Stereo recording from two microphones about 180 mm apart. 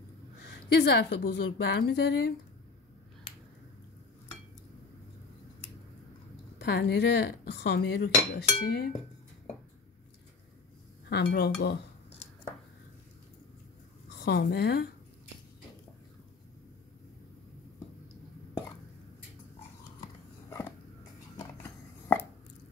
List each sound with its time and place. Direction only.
0.7 s dishes: 70° left (ahead or behind)
6.6 s dishes: 65° left (ahead or behind)
11.1 s dishes: 70° left (ahead or behind)
14.2 s a woman's voice: 65° left (ahead or behind)
20.4 s dog: 15° left (ahead or behind)
21.6 s chopping: 10° left (ahead or behind)